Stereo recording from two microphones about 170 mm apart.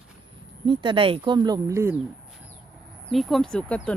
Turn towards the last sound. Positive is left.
turn(degrees=5)  # may be behind; listen again after turning